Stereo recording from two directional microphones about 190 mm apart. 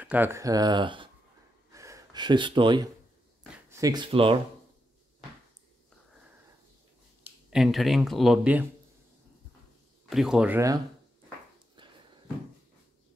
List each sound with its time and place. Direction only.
0.0 s speech: 10° right (ahead or behind); by 1.1 s 25° right (ahead or behind)
1.7 s gasp: 15° right (ahead or behind)
3.7 s speech: 20° right (ahead or behind)
7.5 s speech: centre (ahead or behind)
10.0 s speech: centre (ahead or behind)
11.8 s a sound: 25° right (ahead or behind)